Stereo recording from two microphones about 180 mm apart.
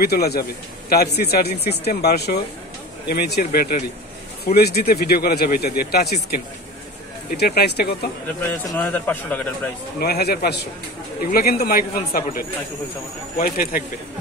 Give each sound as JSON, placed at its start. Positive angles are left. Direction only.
{"t": 0.0, "sound": "speech", "side_deg": 60}
{"t": 8.6, "sound": "a man's voice", "side_deg": 10}
{"t": 9.9, "sound": "speech", "side_deg": 60}